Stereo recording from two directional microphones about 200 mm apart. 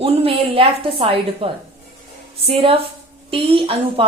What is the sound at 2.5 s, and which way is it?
A woman's voice, 30° right (ahead or behind).